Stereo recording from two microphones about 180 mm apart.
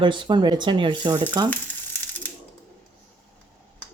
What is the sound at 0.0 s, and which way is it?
Speech, 25° right (ahead or behind).